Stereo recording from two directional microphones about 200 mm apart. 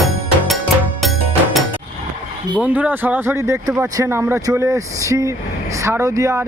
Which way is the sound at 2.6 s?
10° right (ahead or behind).